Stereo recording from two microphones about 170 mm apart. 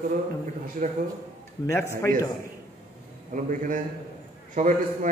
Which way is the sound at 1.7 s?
15° left (ahead or behind).